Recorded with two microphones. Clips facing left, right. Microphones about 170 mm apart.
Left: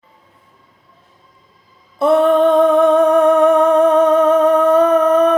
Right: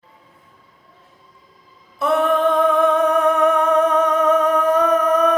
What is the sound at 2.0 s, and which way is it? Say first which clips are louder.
Music: left 6 dB; 30° left (ahead or behind).